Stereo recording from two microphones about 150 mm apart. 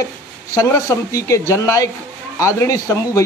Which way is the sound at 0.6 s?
20° left (ahead or behind).